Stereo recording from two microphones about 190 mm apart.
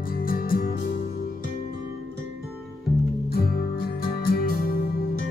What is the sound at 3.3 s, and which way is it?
Music, 55° left (ahead or behind).